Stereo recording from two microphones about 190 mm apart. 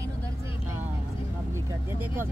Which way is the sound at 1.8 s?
10° right (ahead or behind).